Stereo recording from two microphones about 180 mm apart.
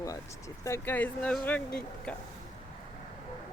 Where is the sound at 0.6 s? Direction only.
15° left (ahead or behind).